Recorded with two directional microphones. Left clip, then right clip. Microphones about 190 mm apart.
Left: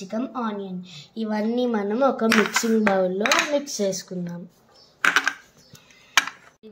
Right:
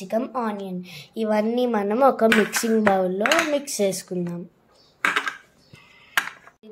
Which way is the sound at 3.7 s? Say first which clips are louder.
Right 2 dB; 30° right (ahead or behind).